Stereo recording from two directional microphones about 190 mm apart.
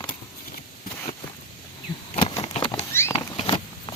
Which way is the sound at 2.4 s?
25° left (ahead or behind).